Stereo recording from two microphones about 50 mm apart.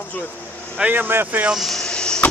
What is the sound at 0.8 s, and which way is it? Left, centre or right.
Speech, right.